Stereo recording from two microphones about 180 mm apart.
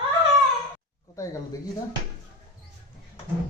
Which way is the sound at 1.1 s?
15° left (ahead or behind).